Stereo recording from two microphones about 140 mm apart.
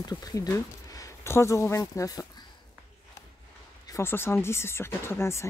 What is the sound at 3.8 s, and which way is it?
Speech, 20° left (ahead or behind).